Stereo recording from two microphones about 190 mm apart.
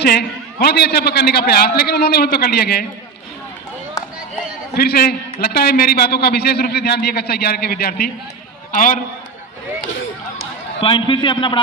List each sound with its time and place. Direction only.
0.0 s a man's voice: 60° left (ahead or behind)
4.8 s a man's voice: 55° left (ahead or behind)
10.8 s a man's voice: 25° left (ahead or behind)